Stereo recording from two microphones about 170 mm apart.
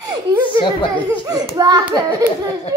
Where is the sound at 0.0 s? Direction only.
25° right (ahead or behind).